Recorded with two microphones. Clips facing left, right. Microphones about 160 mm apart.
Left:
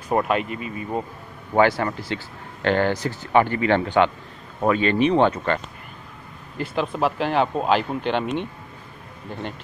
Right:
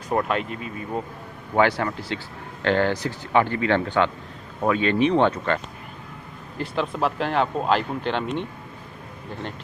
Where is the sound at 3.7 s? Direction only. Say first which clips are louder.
Left 3 dB; 15° left (ahead or behind).